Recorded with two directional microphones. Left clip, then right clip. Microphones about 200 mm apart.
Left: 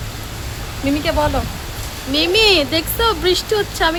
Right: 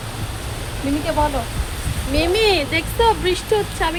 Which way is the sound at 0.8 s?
25° left (ahead or behind).